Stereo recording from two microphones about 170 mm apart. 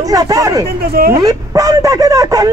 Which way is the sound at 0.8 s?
65° right (ahead or behind).